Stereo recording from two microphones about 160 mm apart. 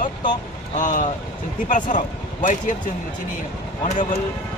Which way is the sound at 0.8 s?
55° left (ahead or behind).